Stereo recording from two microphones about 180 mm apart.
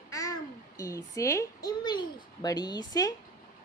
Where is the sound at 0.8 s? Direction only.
15° left (ahead or behind).